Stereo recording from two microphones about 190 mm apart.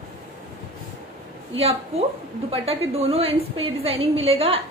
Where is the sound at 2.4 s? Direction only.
30° right (ahead or behind).